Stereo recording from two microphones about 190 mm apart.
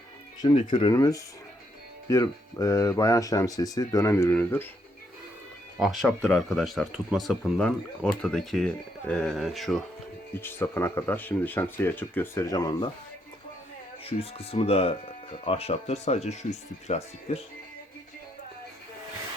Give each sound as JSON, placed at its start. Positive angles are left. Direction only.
{"t": 0.7, "sound": "speech", "side_deg": 25}
{"t": 5.8, "sound": "speech", "side_deg": 0}
{"t": 10.3, "sound": "speech", "side_deg": 10}
{"t": 14.0, "sound": "speech", "side_deg": 30}